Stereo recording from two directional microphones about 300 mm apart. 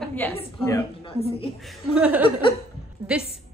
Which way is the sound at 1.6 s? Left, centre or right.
Centre.